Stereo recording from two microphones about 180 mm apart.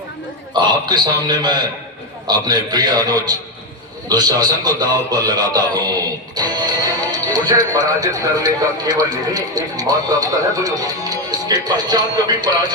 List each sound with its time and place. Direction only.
0.5 s a man's voice: 25° right (ahead or behind)